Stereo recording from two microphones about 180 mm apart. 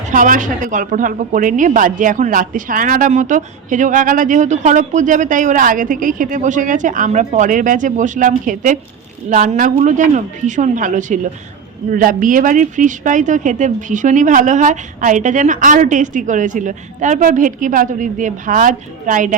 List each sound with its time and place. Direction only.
0.1 s speech: 50° right (ahead or behind)